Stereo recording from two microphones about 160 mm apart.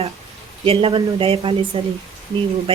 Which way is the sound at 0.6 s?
35° right (ahead or behind).